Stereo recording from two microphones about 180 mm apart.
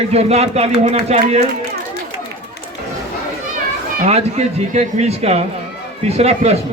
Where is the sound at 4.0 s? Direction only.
40° right (ahead or behind).